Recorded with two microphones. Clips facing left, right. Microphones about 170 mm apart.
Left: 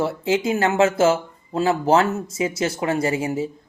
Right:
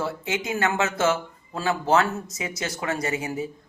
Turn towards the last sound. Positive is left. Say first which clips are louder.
# left 6 dB
turn(degrees=25)  # may be behind; listen again after turning